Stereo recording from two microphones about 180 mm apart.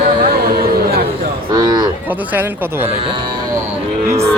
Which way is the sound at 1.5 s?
20° right (ahead or behind).